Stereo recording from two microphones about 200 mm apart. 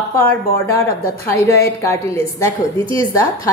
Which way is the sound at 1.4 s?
15° left (ahead or behind).